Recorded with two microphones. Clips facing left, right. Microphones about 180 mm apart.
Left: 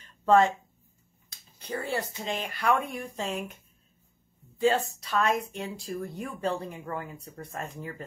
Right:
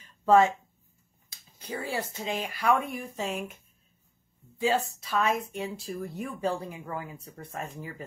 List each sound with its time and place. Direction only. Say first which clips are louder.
0.2 s speech: right 1 dB; centre (ahead or behind)
1.6 s speech: left 1 dB; centre (ahead or behind)
4.6 s speech: left 2 dB; centre (ahead or behind)